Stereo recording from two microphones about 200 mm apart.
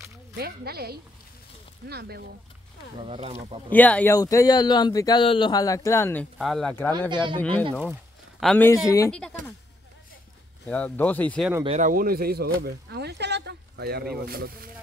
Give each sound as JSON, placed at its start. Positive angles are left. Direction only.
{"t": 0.4, "sound": "speech", "side_deg": -50}
{"t": 3.1, "sound": "speech", "side_deg": -30}
{"t": 3.7, "sound": "speech", "side_deg": 10}
{"t": 6.3, "sound": "speech", "side_deg": 0}
{"t": 7.1, "sound": "speech", "side_deg": -25}
{"t": 8.4, "sound": "speech", "side_deg": 5}
{"t": 9.1, "sound": "speech", "side_deg": 5}
{"t": 10.7, "sound": "speech", "side_deg": 5}
{"t": 11.6, "sound": "speech", "side_deg": -35}